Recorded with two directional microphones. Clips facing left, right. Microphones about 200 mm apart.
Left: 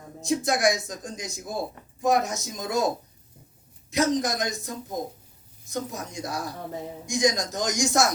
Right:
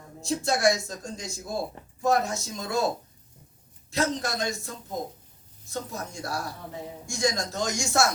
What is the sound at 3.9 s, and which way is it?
A man's voice, 20° left (ahead or behind).